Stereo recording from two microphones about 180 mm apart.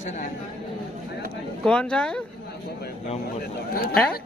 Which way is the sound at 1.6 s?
5° left (ahead or behind).